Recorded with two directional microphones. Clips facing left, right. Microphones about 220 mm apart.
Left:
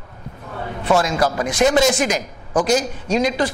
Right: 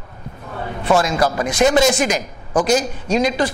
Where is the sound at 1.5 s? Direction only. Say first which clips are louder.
Right 1 dB; 10° right (ahead or behind).